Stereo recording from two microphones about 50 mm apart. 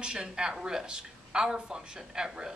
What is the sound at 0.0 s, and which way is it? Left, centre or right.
Speech, centre.